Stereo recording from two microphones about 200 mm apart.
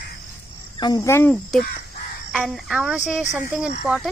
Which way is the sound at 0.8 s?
20° left (ahead or behind).